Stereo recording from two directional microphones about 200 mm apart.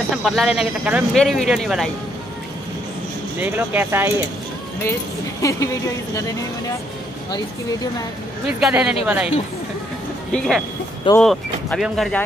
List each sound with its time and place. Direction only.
0.1 s speech: centre (ahead or behind)
3.3 s speech: 10° right (ahead or behind)
5.4 s speech: 15° left (ahead or behind)
8.5 s speech: 5° right (ahead or behind)
10.3 s speech: 5° left (ahead or behind)